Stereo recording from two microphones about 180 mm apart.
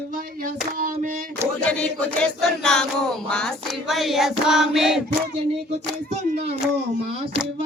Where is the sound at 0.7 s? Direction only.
50° right (ahead or behind).